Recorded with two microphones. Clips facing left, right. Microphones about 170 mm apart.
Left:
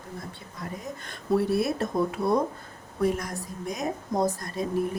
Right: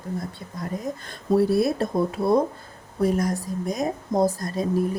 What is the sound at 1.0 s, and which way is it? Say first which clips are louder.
Speech: right 4 dB; 35° right (ahead or behind).